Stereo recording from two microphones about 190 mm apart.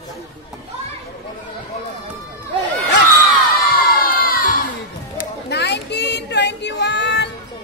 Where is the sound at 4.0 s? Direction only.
50° left (ahead or behind).